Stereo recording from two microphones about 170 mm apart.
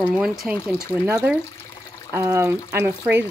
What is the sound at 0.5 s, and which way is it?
Speech, 5° right (ahead or behind).